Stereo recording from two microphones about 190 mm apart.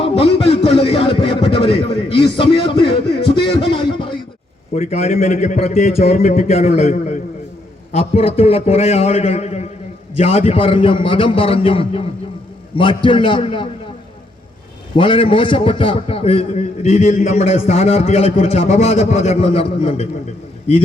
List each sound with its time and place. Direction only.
0.0 s music: 30° left (ahead or behind)
4.7 s a man's voice: 35° left (ahead or behind)
14.9 s a man's voice: 25° left (ahead or behind)